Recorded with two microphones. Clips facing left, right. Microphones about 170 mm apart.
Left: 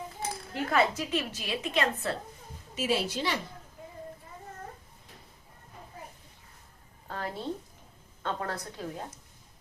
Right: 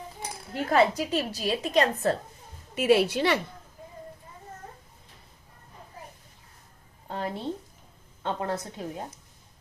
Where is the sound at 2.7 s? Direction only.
60° right (ahead or behind).